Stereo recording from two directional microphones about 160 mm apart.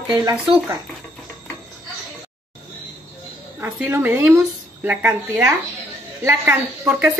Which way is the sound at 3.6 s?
10° right (ahead or behind).